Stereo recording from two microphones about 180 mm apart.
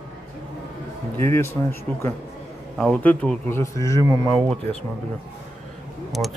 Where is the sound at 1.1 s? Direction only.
15° left (ahead or behind).